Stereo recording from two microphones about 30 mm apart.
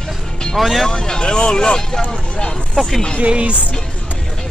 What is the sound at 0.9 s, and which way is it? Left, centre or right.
Speech, left.